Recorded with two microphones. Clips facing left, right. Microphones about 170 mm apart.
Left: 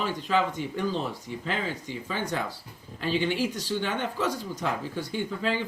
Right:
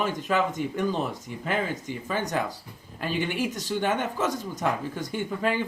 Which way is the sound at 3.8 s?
45° right (ahead or behind).